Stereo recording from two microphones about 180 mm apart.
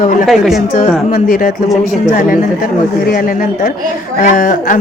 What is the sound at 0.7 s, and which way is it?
Speech, 50° left (ahead or behind).